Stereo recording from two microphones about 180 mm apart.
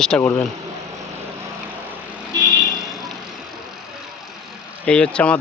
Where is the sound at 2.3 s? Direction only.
20° right (ahead or behind).